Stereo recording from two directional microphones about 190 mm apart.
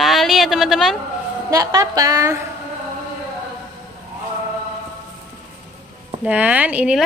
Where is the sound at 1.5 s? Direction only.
15° right (ahead or behind).